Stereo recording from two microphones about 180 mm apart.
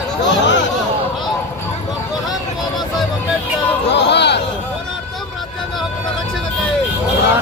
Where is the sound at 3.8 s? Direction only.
75° left (ahead or behind).